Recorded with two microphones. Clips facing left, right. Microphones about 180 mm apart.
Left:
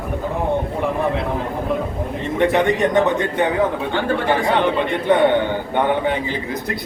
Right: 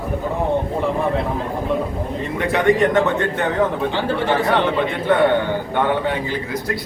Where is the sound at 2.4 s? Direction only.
20° left (ahead or behind).